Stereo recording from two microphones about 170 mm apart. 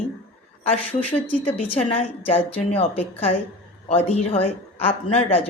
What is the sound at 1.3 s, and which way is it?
Speech, 35° left (ahead or behind).